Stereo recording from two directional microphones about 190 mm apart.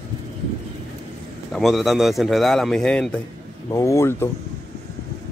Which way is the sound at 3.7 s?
15° left (ahead or behind).